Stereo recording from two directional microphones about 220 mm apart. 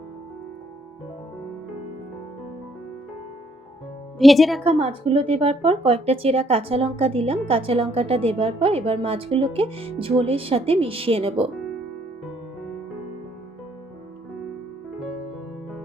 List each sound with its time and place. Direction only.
4.2 s speech: centre (ahead or behind)
4.6 s speech: 25° right (ahead or behind)